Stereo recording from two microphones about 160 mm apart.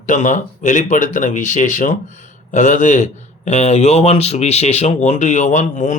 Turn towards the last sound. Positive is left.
turn(degrees=50)  # may be behind; listen again after turning